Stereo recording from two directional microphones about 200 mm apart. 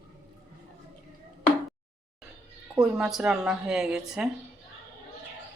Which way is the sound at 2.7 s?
5° right (ahead or behind).